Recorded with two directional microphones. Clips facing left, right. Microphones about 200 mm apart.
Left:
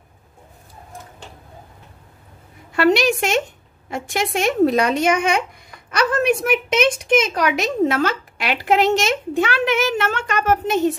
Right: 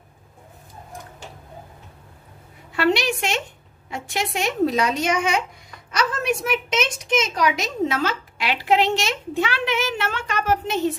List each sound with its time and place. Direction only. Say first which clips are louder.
2.7 s speech: left 5 dB; 45° left (ahead or behind)